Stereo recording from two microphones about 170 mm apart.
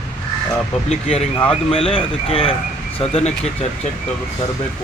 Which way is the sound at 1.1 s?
35° left (ahead or behind).